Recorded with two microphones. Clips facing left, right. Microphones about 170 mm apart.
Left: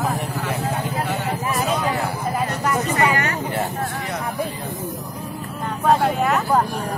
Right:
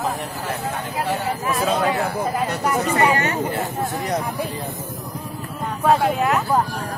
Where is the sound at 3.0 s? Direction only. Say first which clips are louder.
Right 3 dB; 25° right (ahead or behind).